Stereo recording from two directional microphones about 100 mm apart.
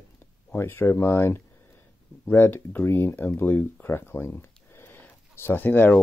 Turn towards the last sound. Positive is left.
turn(degrees=20)  # may be behind; listen again after turning